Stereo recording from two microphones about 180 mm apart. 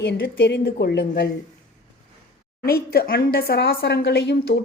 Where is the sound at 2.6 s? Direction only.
60° left (ahead or behind).